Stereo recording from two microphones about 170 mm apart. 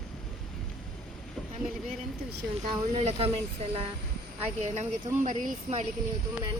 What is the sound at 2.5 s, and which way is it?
Speech, 35° right (ahead or behind).